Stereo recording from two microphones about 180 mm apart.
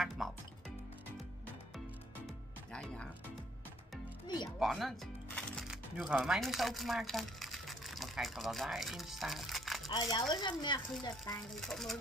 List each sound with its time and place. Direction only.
0.2 s music: centre (ahead or behind)
2.2 s music: 5° left (ahead or behind)
4.5 s speech: centre (ahead or behind)
9.8 s speech: 25° left (ahead or behind)
11.6 s speech: centre (ahead or behind)